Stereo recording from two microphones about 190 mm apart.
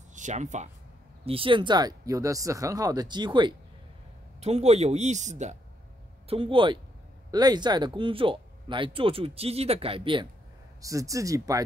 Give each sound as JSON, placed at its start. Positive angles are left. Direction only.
{"t": 0.1, "sound": "speech", "side_deg": -40}
{"t": 6.2, "sound": "speech", "side_deg": -30}
{"t": 10.8, "sound": "speech", "side_deg": -15}